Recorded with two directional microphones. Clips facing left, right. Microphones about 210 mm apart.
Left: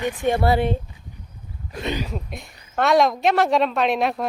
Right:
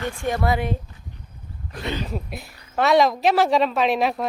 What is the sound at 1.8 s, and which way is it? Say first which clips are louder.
Speech: left 2 dB; 15° left (ahead or behind).